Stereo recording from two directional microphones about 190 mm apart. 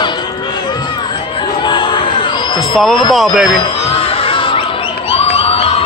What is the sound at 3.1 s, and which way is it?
Speech, centre (ahead or behind).